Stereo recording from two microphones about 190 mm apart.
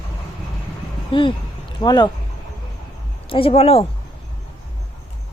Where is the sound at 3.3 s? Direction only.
30° left (ahead or behind).